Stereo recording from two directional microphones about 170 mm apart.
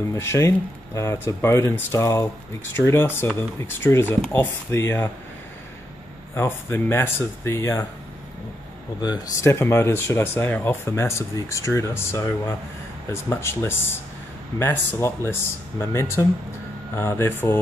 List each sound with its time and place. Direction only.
0.1 s speech: 15° left (ahead or behind)
6.3 s speech: 15° left (ahead or behind)
9.0 s speech: 20° left (ahead or behind)